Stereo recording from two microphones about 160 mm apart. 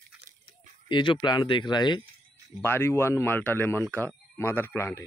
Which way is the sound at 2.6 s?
15° left (ahead or behind).